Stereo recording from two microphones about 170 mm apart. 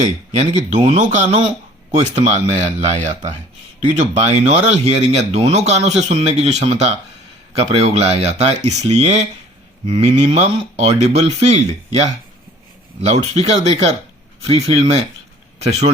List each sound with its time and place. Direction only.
0.0 s speech: 45° right (ahead or behind)
13.3 s speech: 40° right (ahead or behind)